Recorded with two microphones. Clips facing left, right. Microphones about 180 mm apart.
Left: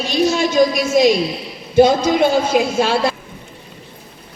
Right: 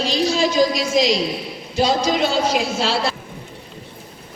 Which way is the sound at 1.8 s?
50° left (ahead or behind).